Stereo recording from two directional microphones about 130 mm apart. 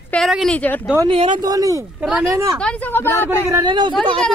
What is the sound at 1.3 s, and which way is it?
Speech, 30° right (ahead or behind).